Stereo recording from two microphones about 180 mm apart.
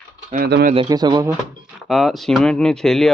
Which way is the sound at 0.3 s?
60° right (ahead or behind).